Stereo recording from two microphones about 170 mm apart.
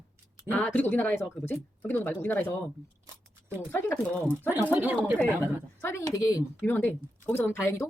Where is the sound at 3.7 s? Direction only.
10° left (ahead or behind).